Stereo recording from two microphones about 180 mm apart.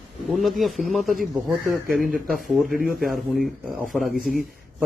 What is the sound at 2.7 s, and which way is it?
Speech, 50° right (ahead or behind).